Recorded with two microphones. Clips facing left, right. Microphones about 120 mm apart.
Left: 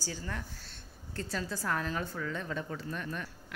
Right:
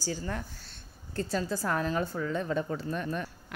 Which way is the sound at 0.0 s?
35° right (ahead or behind).